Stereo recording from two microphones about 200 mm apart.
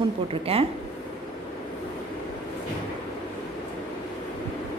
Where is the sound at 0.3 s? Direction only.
30° right (ahead or behind).